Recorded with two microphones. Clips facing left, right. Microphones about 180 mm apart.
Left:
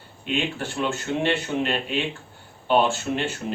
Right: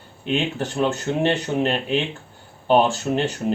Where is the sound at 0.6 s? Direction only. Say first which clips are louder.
Right 5 dB; 40° right (ahead or behind).